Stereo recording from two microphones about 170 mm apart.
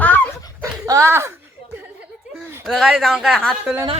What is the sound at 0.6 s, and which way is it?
Dog, 20° right (ahead or behind).